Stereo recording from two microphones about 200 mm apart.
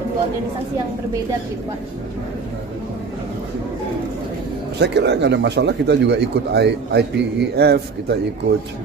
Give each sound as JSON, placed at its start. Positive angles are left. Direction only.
{"t": 4.7, "sound": "speech", "side_deg": -60}